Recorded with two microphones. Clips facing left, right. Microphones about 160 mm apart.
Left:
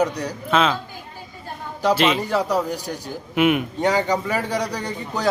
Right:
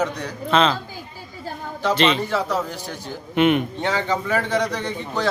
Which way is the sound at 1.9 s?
5° left (ahead or behind).